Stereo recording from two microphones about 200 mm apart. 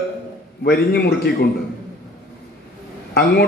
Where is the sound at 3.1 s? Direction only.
55° left (ahead or behind).